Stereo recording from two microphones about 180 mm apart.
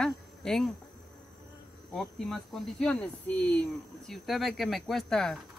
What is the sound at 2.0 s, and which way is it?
Speech, centre (ahead or behind).